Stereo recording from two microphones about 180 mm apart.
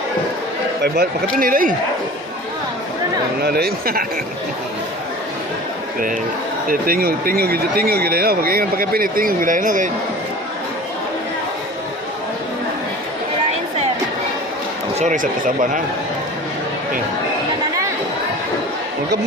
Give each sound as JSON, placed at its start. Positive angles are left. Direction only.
{"t": 0.8, "sound": "speech", "side_deg": -55}
{"t": 3.4, "sound": "speech", "side_deg": -60}
{"t": 6.7, "sound": "speech", "side_deg": -55}
{"t": 14.9, "sound": "speech", "side_deg": -45}